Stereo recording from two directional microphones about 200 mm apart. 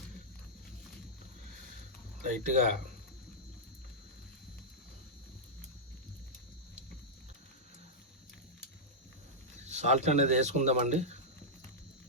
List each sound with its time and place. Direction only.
2.3 s speech: 40° right (ahead or behind)
9.6 s speech: 35° right (ahead or behind)